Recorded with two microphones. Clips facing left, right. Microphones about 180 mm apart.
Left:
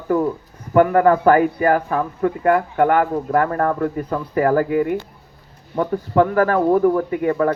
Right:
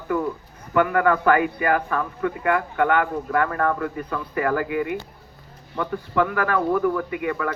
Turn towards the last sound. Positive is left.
turn(degrees=35)  # may be behind; listen again after turning